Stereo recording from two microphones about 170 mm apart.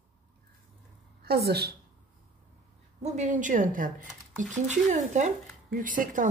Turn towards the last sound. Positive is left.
turn(degrees=-50)  # may be behind; listen again after turning